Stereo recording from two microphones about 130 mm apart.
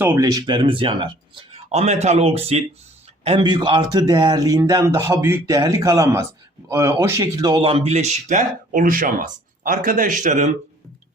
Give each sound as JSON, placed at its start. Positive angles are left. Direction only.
{"t": 0.0, "sound": "speech", "side_deg": -20}
{"t": 0.3, "sound": "speech", "side_deg": -35}
{"t": 1.7, "sound": "speech", "side_deg": -55}
{"t": 3.2, "sound": "speech", "side_deg": -40}